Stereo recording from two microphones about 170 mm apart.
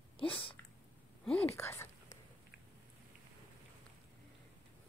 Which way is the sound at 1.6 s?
15° left (ahead or behind).